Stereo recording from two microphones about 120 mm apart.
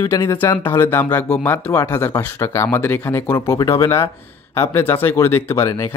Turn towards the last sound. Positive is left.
turn(degrees=20)  # may be behind; listen again after turning